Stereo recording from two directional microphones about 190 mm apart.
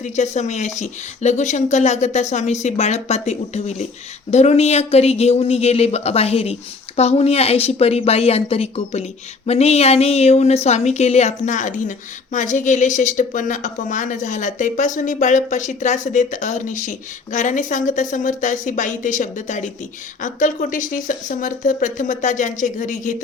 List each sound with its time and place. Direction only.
0.0 s a woman's voice: 40° left (ahead or behind)